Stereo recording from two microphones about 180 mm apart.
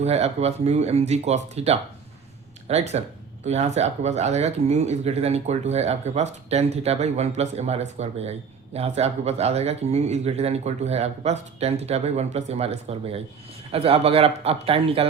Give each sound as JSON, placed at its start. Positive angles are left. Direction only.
{"t": 0.0, "sound": "speech", "side_deg": -35}